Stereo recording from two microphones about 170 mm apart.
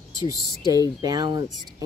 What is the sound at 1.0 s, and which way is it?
Speech, 20° right (ahead or behind).